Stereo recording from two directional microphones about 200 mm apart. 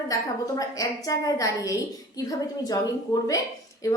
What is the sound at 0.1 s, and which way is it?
A woman's voice, 15° left (ahead or behind).